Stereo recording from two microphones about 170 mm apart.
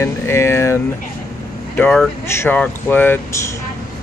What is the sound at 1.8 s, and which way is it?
Speech, 5° left (ahead or behind).